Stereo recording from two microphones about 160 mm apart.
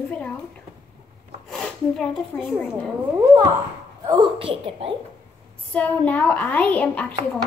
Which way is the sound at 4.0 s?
25° right (ahead or behind).